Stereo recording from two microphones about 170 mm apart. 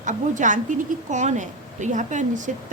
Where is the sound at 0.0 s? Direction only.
50° right (ahead or behind).